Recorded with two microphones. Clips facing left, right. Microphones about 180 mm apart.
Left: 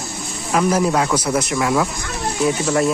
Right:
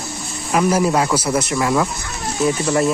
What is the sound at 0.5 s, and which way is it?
Speech, 5° right (ahead or behind).